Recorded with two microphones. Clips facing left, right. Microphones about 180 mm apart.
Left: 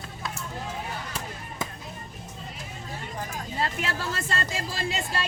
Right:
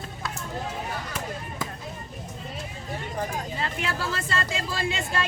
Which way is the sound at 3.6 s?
40° left (ahead or behind).